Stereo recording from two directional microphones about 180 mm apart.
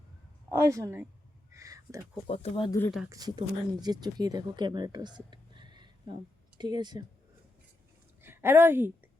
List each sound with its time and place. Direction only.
0.5 s a woman's voice: 15° right (ahead or behind)
1.5 s a sound: 20° right (ahead or behind)
2.2 s speech: 35° left (ahead or behind)
2.6 s speech: 15° left (ahead or behind)
3.1 s speech: 20° right (ahead or behind)
8.2 s a woman's voice: 10° right (ahead or behind)